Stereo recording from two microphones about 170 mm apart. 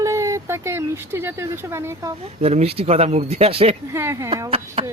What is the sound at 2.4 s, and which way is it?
Speech, 35° right (ahead or behind).